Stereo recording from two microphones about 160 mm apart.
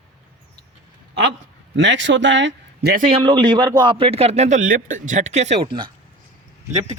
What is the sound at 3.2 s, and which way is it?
A man's voice, 30° right (ahead or behind).